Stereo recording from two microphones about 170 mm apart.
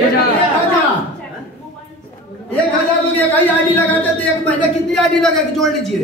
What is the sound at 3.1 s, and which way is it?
A woman's voice, 10° left (ahead or behind).